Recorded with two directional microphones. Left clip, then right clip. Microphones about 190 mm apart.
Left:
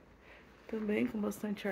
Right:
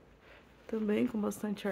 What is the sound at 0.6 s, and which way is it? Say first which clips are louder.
Speech: right 2 dB; 25° right (ahead or behind).